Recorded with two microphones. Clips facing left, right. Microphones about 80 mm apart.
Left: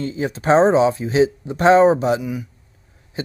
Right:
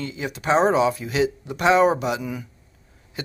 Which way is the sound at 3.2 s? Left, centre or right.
Left.